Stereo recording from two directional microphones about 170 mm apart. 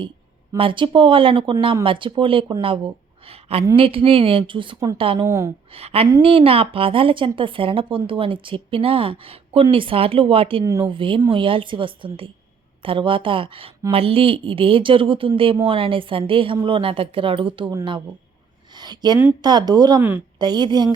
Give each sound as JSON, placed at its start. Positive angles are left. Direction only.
{"t": 0.5, "sound": "a woman's voice", "side_deg": -30}
{"t": 5.2, "sound": "speech", "side_deg": -15}
{"t": 5.7, "sound": "a woman's voice", "side_deg": -35}
{"t": 10.6, "sound": "speech", "side_deg": -20}
{"t": 10.8, "sound": "a woman's voice", "side_deg": -30}
{"t": 18.7, "sound": "a sound", "side_deg": -25}
{"t": 19.4, "sound": "speech", "side_deg": -25}
{"t": 20.0, "sound": "speech", "side_deg": -10}
{"t": 20.4, "sound": "speech", "side_deg": -25}